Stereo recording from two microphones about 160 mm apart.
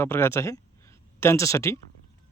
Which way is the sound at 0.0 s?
15° left (ahead or behind).